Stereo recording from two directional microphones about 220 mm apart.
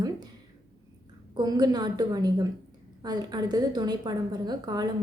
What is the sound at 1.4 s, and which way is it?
A woman's voice, 20° right (ahead or behind).